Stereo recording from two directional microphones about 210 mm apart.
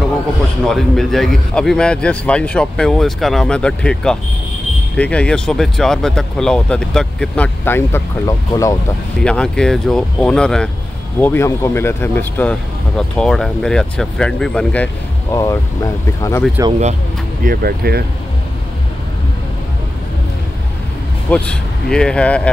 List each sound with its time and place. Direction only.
0.7 s speech: centre (ahead or behind)
9.2 s speech: 5° left (ahead or behind)
15.3 s speech: 15° left (ahead or behind)
17.5 s speech: 45° right (ahead or behind)
21.3 s speech: 5° left (ahead or behind)